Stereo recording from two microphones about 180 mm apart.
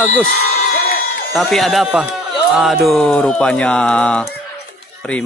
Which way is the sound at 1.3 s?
Centre (ahead or behind).